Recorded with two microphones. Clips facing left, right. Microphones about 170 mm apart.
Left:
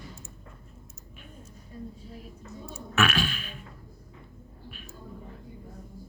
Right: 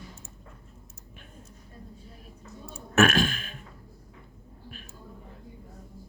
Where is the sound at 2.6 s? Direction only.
45° right (ahead or behind).